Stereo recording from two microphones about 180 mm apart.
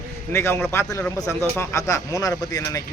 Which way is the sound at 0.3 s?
10° left (ahead or behind).